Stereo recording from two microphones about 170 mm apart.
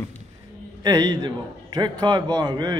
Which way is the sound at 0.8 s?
25° right (ahead or behind).